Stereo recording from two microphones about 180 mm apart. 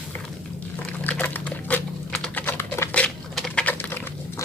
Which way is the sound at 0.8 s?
10° left (ahead or behind).